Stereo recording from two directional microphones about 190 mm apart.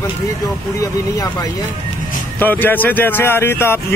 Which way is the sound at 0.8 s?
20° left (ahead or behind).